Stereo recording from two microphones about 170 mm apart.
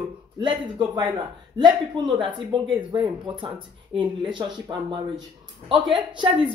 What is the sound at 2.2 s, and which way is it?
Speech, 30° right (ahead or behind).